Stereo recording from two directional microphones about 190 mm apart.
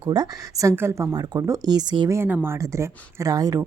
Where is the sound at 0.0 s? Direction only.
20° right (ahead or behind).